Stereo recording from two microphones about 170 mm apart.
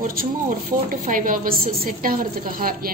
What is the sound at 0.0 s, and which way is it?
A woman's voice, 55° right (ahead or behind).